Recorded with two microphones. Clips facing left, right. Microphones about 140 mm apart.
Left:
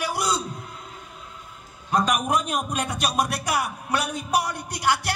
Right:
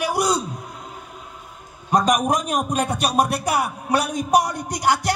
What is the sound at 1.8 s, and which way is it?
A man's voice, 40° right (ahead or behind).